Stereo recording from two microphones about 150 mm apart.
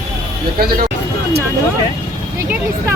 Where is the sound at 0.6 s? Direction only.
90° right.